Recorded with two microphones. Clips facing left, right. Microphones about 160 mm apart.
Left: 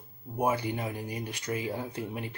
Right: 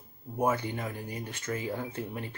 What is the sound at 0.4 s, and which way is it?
Speech, 10° left (ahead or behind).